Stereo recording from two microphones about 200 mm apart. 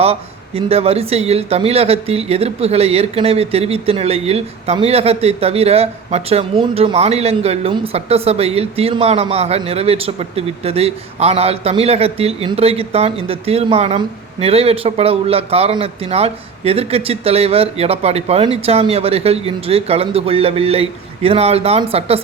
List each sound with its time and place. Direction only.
0.0 s a man's voice: 30° right (ahead or behind)